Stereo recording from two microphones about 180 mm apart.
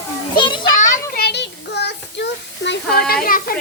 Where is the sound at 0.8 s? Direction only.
45° left (ahead or behind).